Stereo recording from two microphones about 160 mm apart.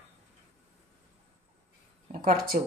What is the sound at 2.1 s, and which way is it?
Speech, 65° right (ahead or behind).